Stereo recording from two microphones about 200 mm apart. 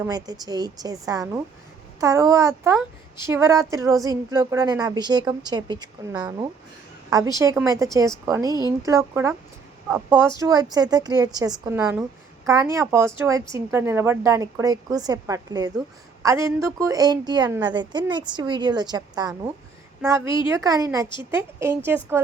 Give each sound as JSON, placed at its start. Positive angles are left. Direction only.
{"t": 0.0, "sound": "a woman's voice", "side_deg": -20}
{"t": 20.2, "sound": "a woman's voice", "side_deg": 25}
{"t": 20.5, "sound": "a woman's voice", "side_deg": -15}